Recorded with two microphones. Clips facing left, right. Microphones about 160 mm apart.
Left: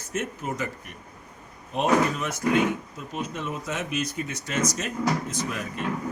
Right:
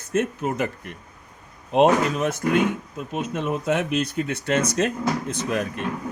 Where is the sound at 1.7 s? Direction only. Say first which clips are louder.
Right 5 dB; 70° right (ahead or behind).